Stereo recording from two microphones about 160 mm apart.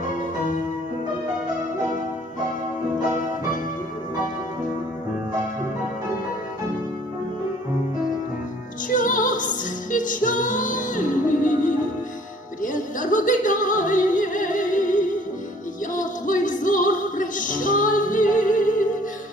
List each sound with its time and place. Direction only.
8.9 s music: 55° left (ahead or behind)